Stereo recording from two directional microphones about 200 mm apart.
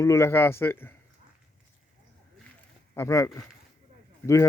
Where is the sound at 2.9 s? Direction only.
15° left (ahead or behind).